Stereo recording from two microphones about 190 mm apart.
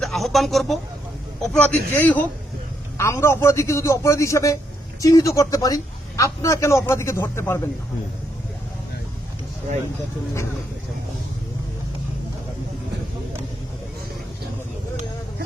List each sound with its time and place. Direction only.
0.0 s a man's voice: centre (ahead or behind)